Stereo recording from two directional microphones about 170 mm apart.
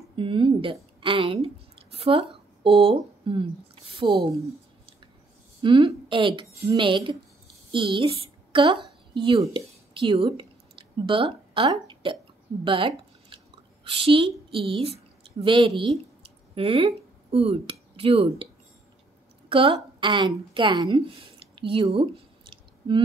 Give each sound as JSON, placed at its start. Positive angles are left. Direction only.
{"t": 0.1, "sound": "a woman's voice", "side_deg": -30}
{"t": 5.6, "sound": "a woman's voice", "side_deg": -25}
{"t": 12.6, "sound": "a sound", "side_deg": -30}
{"t": 13.8, "sound": "a woman's voice", "side_deg": -35}
{"t": 19.5, "sound": "a woman's voice", "side_deg": -30}